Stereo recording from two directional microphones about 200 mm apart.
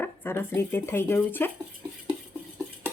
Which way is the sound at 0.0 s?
10° left (ahead or behind).